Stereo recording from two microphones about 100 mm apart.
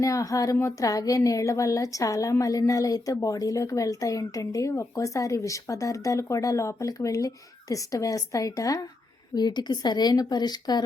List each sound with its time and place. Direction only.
0.0 s a woman's voice: 35° left (ahead or behind)